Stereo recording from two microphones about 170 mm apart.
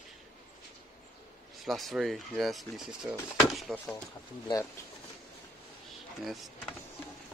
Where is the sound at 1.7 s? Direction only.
Centre (ahead or behind).